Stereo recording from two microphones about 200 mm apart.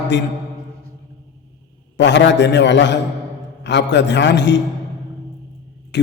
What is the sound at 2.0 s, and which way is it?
Mantra, 60° left (ahead or behind).